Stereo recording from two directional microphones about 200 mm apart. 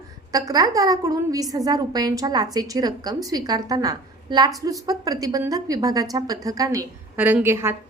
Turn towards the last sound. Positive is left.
turn(degrees=-10)  # may be behind; listen again after turning